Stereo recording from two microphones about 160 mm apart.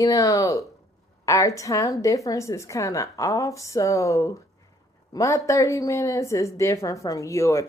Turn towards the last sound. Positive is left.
turn(degrees=20)  # may be behind; listen again after turning